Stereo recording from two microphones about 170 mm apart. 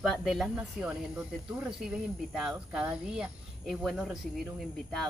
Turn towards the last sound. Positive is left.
turn(degrees=0)  # may be behind; listen again after turning